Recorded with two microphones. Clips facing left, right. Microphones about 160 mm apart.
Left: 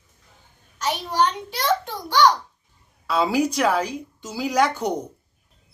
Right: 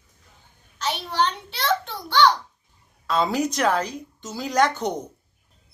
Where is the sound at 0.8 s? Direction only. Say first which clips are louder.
Left 2 dB; 10° left (ahead or behind).